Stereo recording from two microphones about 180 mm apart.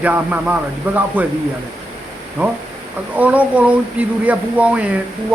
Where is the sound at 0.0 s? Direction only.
10° right (ahead or behind).